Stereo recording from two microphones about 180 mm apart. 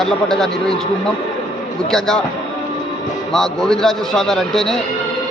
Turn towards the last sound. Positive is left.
turn(degrees=0)  # may be behind; listen again after turning